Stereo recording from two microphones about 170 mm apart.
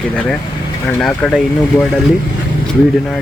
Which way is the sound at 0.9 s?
5° left (ahead or behind).